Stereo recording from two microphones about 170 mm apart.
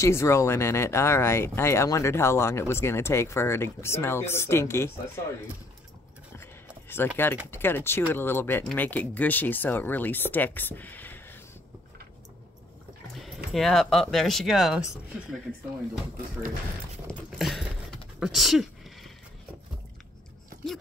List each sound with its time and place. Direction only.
0.0 s speech: 15° left (ahead or behind)
6.3 s a sound: 15° left (ahead or behind)
7.5 s speech: 15° left (ahead or behind)
13.1 s music: centre (ahead or behind)
13.5 s speech: centre (ahead or behind)
17.1 s a sound: centre (ahead or behind)